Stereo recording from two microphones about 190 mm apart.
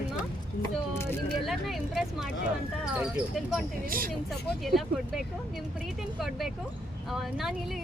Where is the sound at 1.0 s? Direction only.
10° left (ahead or behind).